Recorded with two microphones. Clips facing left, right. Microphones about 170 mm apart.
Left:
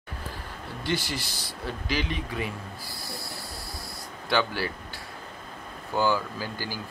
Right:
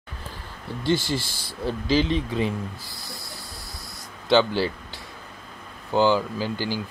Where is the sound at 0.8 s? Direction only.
25° right (ahead or behind).